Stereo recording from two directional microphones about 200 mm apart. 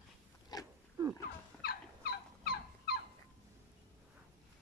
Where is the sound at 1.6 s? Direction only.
50° left (ahead or behind).